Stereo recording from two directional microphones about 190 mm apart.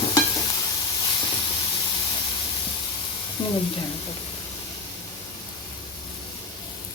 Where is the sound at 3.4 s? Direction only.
20° left (ahead or behind).